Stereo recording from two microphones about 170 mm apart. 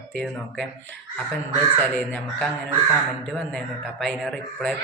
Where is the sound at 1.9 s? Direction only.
10° left (ahead or behind).